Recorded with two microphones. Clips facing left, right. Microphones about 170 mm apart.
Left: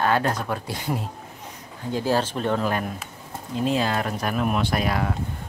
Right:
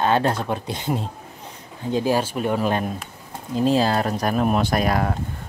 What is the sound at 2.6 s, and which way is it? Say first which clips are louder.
Speech: right 3 dB; 20° right (ahead or behind).